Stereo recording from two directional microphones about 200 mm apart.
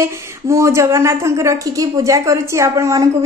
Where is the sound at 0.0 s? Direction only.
15° right (ahead or behind).